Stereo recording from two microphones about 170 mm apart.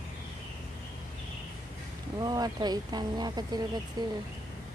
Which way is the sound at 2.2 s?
25° right (ahead or behind).